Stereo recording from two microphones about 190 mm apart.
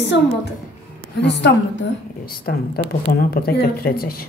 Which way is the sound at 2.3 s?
55° left (ahead or behind).